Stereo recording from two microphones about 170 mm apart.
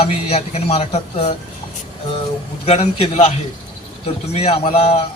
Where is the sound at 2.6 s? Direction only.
40° left (ahead or behind).